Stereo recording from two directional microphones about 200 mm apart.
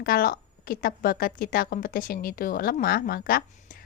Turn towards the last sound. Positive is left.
turn(degrees=45)  # may be behind; listen again after turning